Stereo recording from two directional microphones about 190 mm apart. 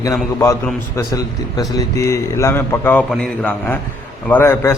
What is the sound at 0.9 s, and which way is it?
A man's voice, 20° left (ahead or behind).